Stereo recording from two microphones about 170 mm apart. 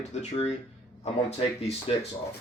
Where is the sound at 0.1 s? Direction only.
40° left (ahead or behind).